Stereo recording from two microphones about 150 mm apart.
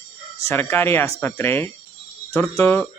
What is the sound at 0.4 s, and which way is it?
Speech, 15° left (ahead or behind).